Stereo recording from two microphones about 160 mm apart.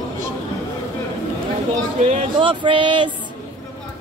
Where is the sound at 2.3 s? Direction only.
30° right (ahead or behind).